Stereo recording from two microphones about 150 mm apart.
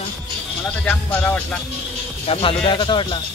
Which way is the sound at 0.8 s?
10° left (ahead or behind).